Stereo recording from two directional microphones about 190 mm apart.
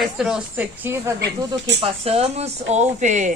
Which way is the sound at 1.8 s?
30° right (ahead or behind).